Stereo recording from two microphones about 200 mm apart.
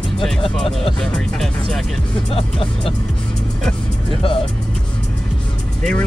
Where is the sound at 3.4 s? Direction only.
Centre (ahead or behind).